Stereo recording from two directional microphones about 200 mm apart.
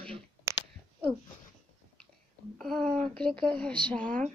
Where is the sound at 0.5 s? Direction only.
15° right (ahead or behind).